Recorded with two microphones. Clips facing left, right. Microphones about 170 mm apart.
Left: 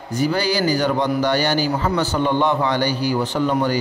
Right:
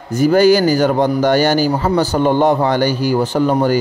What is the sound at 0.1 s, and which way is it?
A man's voice, 45° right (ahead or behind).